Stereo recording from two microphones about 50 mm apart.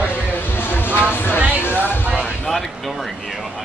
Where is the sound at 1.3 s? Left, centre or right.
Right.